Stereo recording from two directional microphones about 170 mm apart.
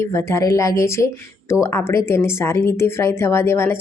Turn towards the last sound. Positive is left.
turn(degrees=15)  # may be behind; listen again after turning